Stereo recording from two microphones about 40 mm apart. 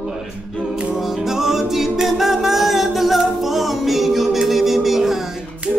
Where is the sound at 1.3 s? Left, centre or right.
Centre.